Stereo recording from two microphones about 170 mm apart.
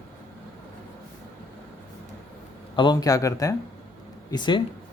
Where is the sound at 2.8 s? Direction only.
25° left (ahead or behind).